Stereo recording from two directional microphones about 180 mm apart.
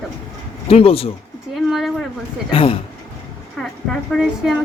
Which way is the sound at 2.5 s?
30° left (ahead or behind).